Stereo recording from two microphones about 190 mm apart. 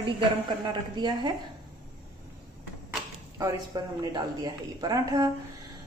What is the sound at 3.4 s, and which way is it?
A woman's voice, 20° right (ahead or behind).